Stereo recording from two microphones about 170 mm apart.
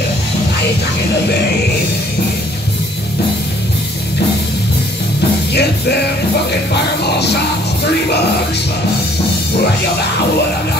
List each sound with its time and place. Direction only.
5.5 s music: 75° left (ahead or behind)